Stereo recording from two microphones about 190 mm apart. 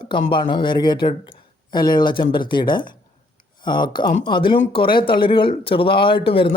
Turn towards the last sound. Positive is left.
turn(degrees=30)  # may be behind; listen again after turning